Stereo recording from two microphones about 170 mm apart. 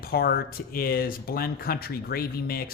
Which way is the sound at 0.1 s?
65° left (ahead or behind).